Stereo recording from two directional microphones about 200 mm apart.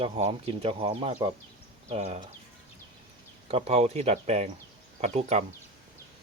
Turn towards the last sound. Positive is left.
turn(degrees=-35)  # may be behind; listen again after turning